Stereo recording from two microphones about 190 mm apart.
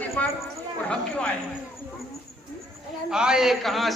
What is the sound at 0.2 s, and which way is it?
A man's voice, 5° left (ahead or behind).